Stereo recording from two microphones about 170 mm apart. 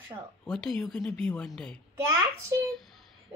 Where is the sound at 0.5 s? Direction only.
5° left (ahead or behind).